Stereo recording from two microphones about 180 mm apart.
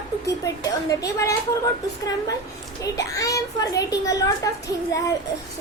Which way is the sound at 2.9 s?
20° left (ahead or behind).